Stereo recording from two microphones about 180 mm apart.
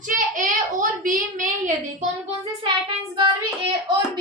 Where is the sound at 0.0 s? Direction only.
45° right (ahead or behind).